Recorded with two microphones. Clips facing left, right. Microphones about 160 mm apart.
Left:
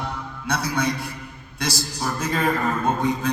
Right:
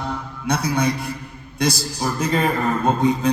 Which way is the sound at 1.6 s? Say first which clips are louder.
Right 5 dB; 20° right (ahead or behind).